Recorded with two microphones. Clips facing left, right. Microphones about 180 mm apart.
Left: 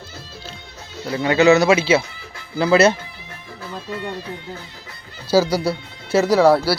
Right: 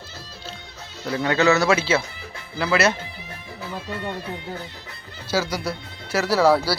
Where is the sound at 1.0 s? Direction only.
5° left (ahead or behind).